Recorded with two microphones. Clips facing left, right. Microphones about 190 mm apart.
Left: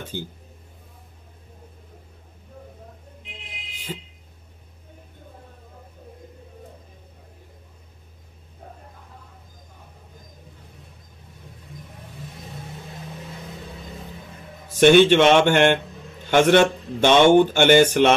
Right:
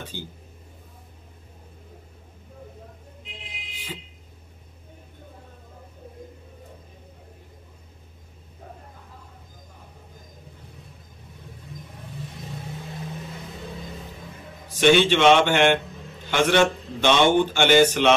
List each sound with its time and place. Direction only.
0.1 s a man's voice: 50° left (ahead or behind)
14.8 s a man's voice: 50° left (ahead or behind)